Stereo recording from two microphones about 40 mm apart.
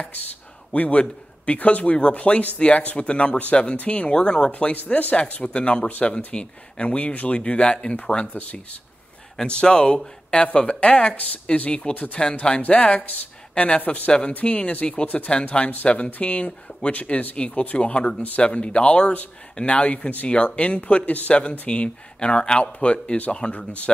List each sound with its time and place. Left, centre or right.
0.7 s speech: left
4.1 s speech: left
6.1 s speech: left
9.5 s speech: left
17.6 s speech: left
21.4 s speech: left